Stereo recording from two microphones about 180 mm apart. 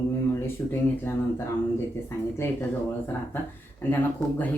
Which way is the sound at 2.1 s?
15° left (ahead or behind).